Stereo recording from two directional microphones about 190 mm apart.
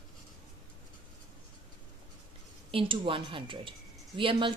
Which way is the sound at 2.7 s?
25° right (ahead or behind).